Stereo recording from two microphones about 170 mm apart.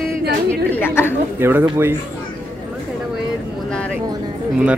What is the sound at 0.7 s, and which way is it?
Speech, 10° left (ahead or behind).